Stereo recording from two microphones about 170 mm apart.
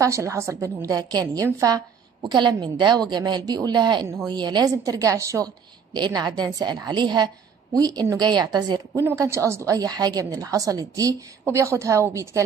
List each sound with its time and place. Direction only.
0.0 s a woman's voice: 20° right (ahead or behind)